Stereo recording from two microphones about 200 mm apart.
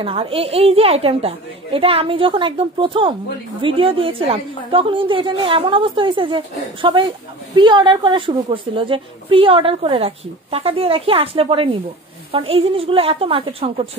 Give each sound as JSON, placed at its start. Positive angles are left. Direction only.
{"t": 0.0, "sound": "a woman's voice", "side_deg": -25}